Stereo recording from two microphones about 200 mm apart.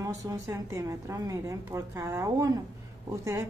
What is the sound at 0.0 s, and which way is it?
A woman's voice, 15° right (ahead or behind).